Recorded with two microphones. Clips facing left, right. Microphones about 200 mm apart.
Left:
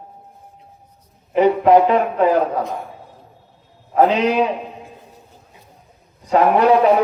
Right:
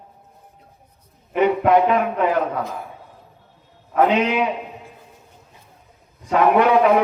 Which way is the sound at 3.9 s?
35° left (ahead or behind).